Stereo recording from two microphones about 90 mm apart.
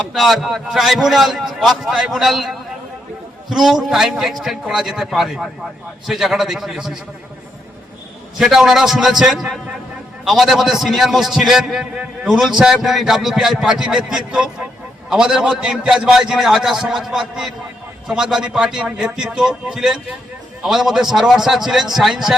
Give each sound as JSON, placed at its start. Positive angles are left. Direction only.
{"t": 0.1, "sound": "a man's voice", "side_deg": 0}
{"t": 8.4, "sound": "a man's voice", "side_deg": -5}